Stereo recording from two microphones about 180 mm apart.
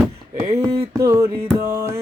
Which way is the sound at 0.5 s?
15° right (ahead or behind).